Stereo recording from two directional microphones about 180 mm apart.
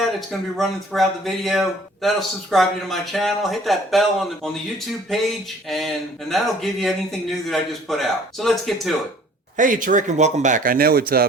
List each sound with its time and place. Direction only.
0.0 s speech: centre (ahead or behind)
9.6 s speech: 45° right (ahead or behind)